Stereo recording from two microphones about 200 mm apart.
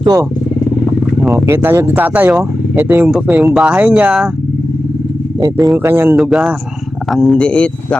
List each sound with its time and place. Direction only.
0.0 s speech: 15° right (ahead or behind)
1.2 s speech: centre (ahead or behind)
5.7 s speech: 10° right (ahead or behind); by 7.9 s 5° left (ahead or behind)